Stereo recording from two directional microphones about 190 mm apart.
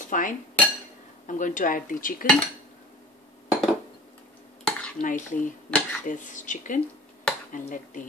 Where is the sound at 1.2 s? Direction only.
45° left (ahead or behind).